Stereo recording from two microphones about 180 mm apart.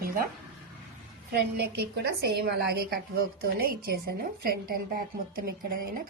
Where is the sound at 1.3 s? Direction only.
65° right (ahead or behind).